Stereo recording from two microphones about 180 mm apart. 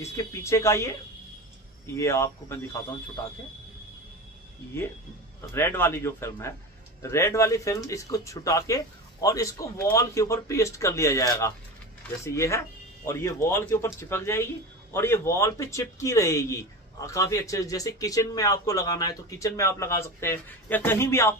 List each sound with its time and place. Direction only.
0.0 s speech: 15° left (ahead or behind)
2.0 s speech: 15° left (ahead or behind)
5.5 s speech: 15° left (ahead or behind)